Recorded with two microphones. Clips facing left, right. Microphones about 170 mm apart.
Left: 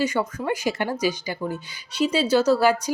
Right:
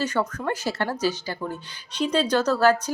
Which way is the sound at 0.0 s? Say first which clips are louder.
Left 1 dB; 10° left (ahead or behind).